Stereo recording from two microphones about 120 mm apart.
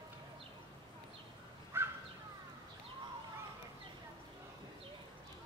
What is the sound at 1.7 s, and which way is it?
Crow, 20° right (ahead or behind).